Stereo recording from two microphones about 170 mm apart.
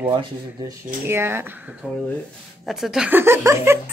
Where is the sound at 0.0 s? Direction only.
30° right (ahead or behind).